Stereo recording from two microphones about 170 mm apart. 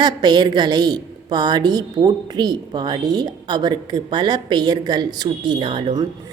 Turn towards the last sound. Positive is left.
turn(degrees=-25)  # may be behind; listen again after turning